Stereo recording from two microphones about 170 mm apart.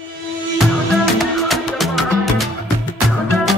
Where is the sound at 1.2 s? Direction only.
Centre (ahead or behind).